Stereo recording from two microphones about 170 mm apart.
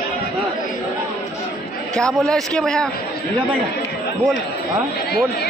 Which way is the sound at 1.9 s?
5° left (ahead or behind).